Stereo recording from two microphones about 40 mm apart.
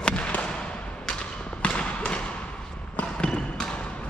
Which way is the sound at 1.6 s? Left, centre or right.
Left.